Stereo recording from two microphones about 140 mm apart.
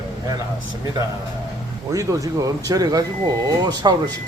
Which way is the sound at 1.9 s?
25° right (ahead or behind).